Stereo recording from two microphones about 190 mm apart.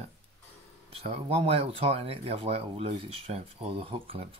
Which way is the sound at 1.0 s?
35° right (ahead or behind).